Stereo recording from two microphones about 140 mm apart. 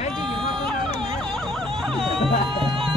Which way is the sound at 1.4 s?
Centre (ahead or behind).